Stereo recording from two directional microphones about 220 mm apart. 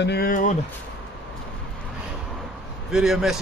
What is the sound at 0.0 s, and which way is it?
Speech, 45° left (ahead or behind).